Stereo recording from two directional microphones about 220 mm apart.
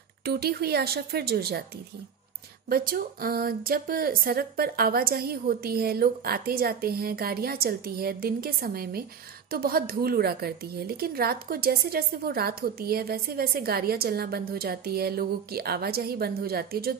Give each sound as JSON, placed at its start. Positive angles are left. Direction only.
{"t": 0.2, "sound": "a woman's voice", "side_deg": -45}
{"t": 2.7, "sound": "a woman's voice", "side_deg": -40}